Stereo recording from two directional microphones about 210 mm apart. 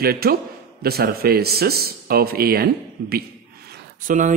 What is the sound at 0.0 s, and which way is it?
A man's voice, 45° right (ahead or behind).